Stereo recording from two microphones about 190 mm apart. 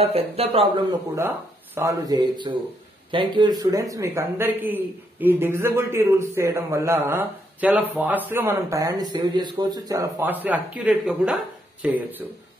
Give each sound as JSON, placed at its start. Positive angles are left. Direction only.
{"t": 0.0, "sound": "speech", "side_deg": -30}
{"t": 1.8, "sound": "a man's voice", "side_deg": -20}